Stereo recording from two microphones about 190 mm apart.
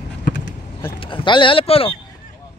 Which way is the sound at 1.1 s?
25° left (ahead or behind).